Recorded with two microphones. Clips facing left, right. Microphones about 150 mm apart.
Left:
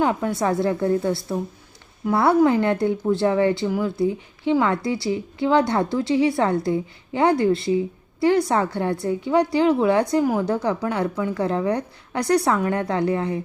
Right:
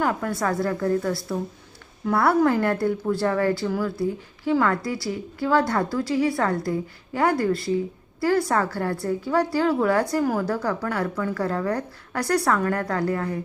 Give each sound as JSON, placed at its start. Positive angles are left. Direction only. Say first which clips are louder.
{"t": 0.0, "sound": "a woman's voice", "louder": "left 3 dB", "side_deg": 20}